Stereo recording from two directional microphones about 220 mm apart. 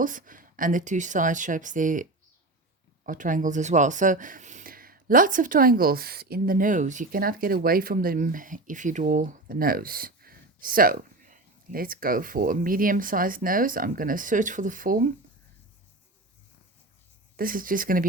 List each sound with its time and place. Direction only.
0.0 s speech: 35° right (ahead or behind)
3.1 s speech: 35° right (ahead or behind)
17.3 s speech: 40° right (ahead or behind)